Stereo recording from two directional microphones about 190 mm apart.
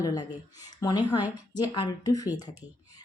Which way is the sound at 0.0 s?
20° left (ahead or behind).